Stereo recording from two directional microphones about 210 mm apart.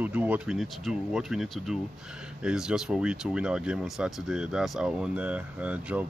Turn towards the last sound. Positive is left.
turn(degrees=-5)  # may be behind; listen again after turning